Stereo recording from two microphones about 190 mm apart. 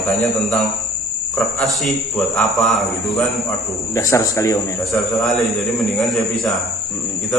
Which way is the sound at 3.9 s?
15° left (ahead or behind).